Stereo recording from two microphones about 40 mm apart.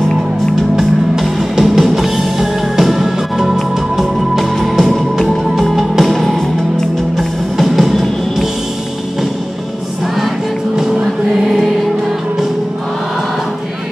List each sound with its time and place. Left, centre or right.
0.6 s music: centre